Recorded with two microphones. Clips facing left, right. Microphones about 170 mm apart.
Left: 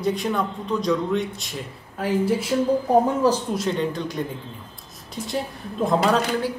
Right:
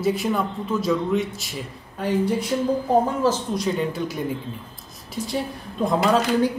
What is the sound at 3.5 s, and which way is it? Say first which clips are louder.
Speech: even; 5° right (ahead or behind).